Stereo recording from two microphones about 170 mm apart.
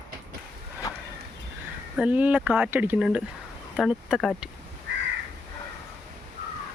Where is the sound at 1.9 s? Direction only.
10° right (ahead or behind).